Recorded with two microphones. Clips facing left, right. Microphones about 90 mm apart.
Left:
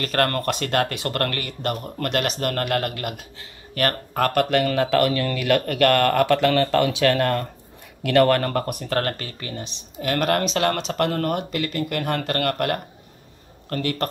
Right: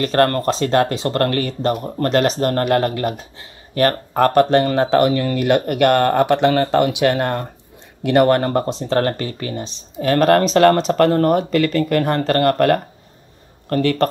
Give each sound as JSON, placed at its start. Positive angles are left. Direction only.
{"t": 0.0, "sound": "speech", "side_deg": -30}